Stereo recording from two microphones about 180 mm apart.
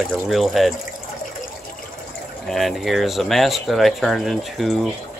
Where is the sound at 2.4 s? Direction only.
Centre (ahead or behind).